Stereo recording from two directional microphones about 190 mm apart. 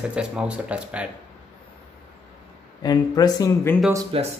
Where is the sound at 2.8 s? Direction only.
20° left (ahead or behind).